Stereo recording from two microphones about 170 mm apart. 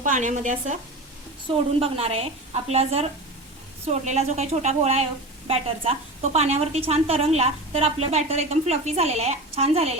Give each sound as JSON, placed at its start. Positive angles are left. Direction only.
{"t": 0.0, "sound": "speech", "side_deg": -50}
{"t": 1.5, "sound": "a woman's voice", "side_deg": -35}